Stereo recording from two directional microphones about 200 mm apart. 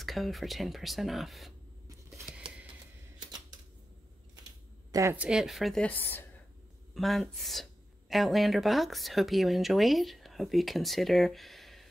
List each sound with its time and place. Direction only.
0.0 s speech: centre (ahead or behind)
2.0 s a sound: 5° right (ahead or behind)
3.2 s camera: 20° right (ahead or behind)
4.9 s speech: 10° right (ahead or behind)